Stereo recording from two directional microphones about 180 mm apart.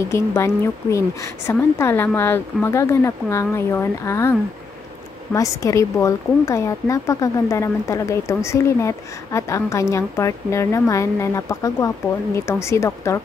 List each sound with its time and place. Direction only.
0.1 s speech: 15° left (ahead or behind)